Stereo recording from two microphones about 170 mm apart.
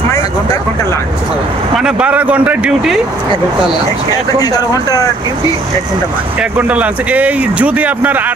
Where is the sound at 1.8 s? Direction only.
5° right (ahead or behind).